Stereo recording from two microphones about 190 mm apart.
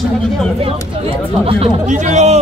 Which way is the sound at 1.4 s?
35° right (ahead or behind).